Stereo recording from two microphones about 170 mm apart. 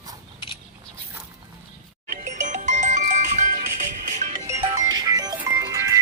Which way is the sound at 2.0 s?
50° right (ahead or behind).